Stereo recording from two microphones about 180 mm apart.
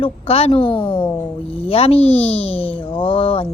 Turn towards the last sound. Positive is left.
turn(degrees=30)  # may be behind; listen again after turning